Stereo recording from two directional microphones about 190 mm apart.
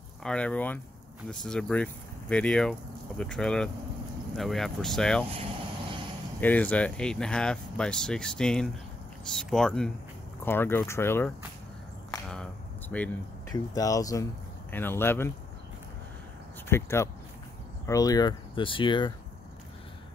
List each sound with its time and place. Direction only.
0.2 s speech: 5° left (ahead or behind)
6.4 s speech: 10° left (ahead or behind)
12.9 s speech: 5° left (ahead or behind)
13.5 s speech: 20° left (ahead or behind)
16.6 s speech: 15° left (ahead or behind)